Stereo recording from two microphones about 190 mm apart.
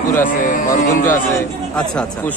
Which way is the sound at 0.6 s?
40° left (ahead or behind).